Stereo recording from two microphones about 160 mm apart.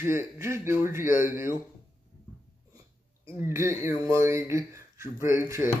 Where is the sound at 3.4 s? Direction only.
15° right (ahead or behind).